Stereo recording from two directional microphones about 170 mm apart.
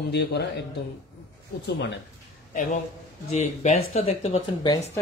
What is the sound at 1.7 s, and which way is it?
Speech, 90° left.